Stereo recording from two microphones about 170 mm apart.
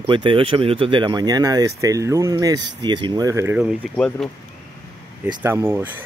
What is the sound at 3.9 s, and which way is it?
Speech, 5° left (ahead or behind).